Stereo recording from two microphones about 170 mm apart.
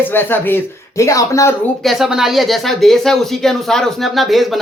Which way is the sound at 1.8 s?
Centre (ahead or behind).